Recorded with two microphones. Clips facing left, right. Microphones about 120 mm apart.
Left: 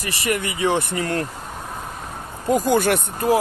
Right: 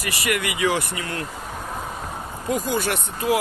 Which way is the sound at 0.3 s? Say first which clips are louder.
Left 2 dB; 35° left (ahead or behind).